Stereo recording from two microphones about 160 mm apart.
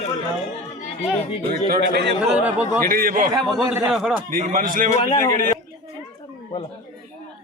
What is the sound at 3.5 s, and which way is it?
Speech, centre (ahead or behind).